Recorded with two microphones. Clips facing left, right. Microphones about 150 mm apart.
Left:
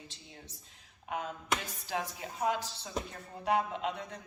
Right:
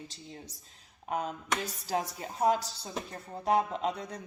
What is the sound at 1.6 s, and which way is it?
A woman's voice, 40° right (ahead or behind).